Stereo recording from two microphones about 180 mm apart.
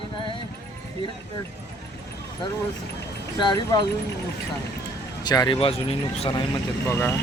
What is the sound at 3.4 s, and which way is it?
Speech, 25° left (ahead or behind).